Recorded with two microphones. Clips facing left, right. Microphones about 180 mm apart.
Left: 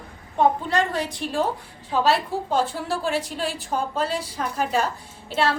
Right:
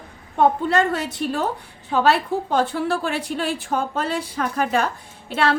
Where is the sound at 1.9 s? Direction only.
60° right (ahead or behind).